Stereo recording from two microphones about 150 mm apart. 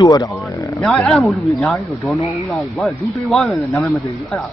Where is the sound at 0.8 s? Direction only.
Centre (ahead or behind).